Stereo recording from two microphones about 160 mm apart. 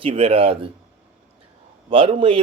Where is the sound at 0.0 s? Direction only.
35° right (ahead or behind).